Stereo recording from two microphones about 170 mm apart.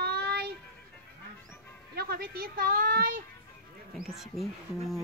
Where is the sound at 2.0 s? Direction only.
65° right (ahead or behind).